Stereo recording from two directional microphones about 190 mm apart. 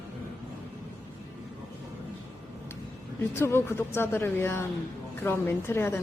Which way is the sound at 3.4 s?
10° left (ahead or behind).